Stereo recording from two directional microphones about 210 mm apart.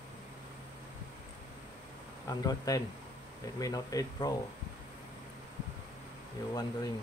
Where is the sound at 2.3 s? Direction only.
15° left (ahead or behind).